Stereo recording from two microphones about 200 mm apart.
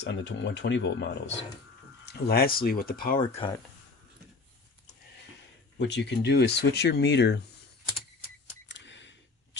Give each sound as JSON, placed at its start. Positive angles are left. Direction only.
{"t": 0.0, "sound": "speech", "side_deg": 60}
{"t": 2.0, "sound": "speech", "side_deg": 50}
{"t": 3.2, "sound": "speech", "side_deg": 20}
{"t": 5.8, "sound": "speech", "side_deg": 60}
{"t": 8.4, "sound": "a sound", "side_deg": 65}